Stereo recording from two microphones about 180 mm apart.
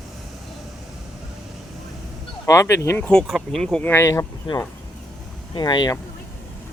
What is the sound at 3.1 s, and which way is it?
Speech, centre (ahead or behind).